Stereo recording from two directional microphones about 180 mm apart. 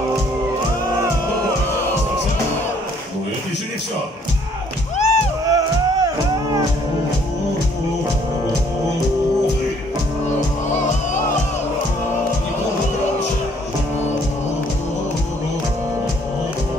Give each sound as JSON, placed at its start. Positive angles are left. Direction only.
{"t": 4.9, "sound": "music", "side_deg": 40}
{"t": 5.4, "sound": "music", "side_deg": -20}